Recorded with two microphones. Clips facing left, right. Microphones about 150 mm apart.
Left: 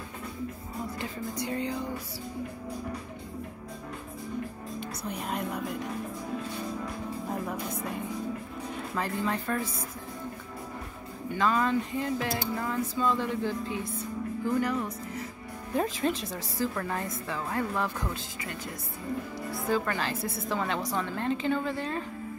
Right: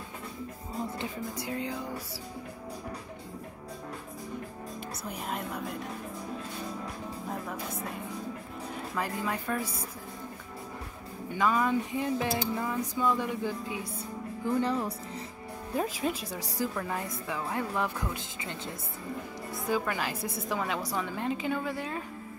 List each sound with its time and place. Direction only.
1.3 s speech: 5° right (ahead or behind)
4.7 s music: centre (ahead or behind)
8.9 s a woman's voice: 5° right (ahead or behind)
11.3 s a woman's voice: 10° right (ahead or behind)
14.4 s speech: 30° right (ahead or behind)
15.7 s a woman's voice: 5° right (ahead or behind)
19.8 s a woman's voice: 10° right (ahead or behind)